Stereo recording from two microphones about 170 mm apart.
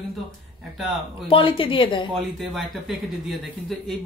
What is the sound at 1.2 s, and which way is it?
Speech, 30° left (ahead or behind).